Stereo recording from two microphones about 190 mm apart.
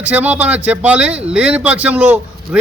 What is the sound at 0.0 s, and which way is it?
A man's voice, 10° right (ahead or behind).